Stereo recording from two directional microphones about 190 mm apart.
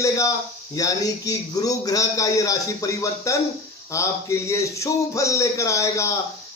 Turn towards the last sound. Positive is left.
turn(degrees=15)  # may be behind; listen again after turning